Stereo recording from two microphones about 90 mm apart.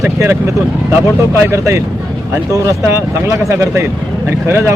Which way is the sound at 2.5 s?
35° right (ahead or behind).